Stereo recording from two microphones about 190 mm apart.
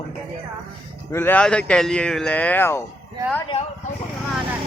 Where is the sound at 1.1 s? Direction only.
10° left (ahead or behind).